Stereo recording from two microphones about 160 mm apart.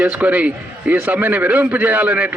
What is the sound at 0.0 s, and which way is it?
A man's voice, 10° right (ahead or behind).